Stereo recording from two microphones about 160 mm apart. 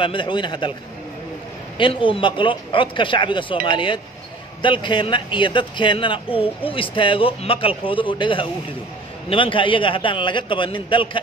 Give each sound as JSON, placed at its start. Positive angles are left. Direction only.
{"t": 0.0, "sound": "a man's voice", "side_deg": 30}
{"t": 1.8, "sound": "a man's voice", "side_deg": 30}